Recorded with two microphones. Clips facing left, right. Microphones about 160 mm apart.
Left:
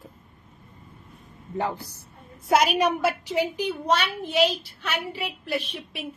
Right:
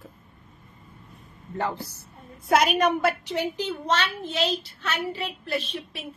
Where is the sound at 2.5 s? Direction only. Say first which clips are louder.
Even; 55° right (ahead or behind).